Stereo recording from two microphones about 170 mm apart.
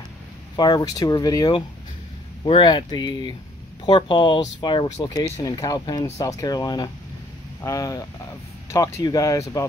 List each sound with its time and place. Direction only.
0.6 s speech: 25° left (ahead or behind)